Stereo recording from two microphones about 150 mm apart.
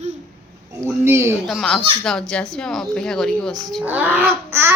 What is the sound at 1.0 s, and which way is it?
Speech, 15° right (ahead or behind).